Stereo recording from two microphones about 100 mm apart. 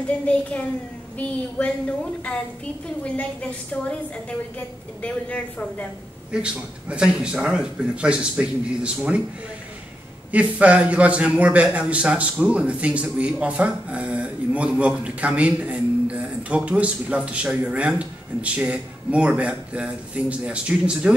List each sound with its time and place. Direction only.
0.3 s a woman's voice: 15° left (ahead or behind)
6.3 s a man's voice: 10° right (ahead or behind)
10.3 s a man's voice: 15° right (ahead or behind)